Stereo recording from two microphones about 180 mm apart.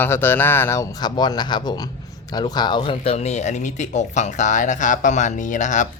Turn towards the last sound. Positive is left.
turn(degrees=45)  # may be behind; listen again after turning